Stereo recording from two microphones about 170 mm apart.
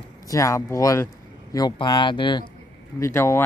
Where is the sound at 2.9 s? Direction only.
15° left (ahead or behind).